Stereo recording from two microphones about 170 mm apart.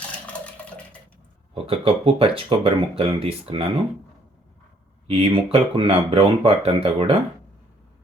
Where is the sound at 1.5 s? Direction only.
35° right (ahead or behind).